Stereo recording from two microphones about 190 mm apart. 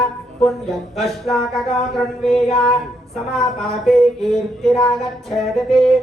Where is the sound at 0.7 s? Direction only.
Centre (ahead or behind).